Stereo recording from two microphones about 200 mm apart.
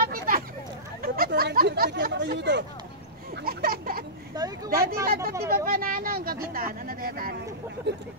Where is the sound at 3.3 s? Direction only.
50° right (ahead or behind).